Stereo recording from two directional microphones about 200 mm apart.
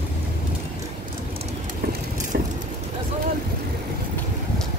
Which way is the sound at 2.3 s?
50° right (ahead or behind).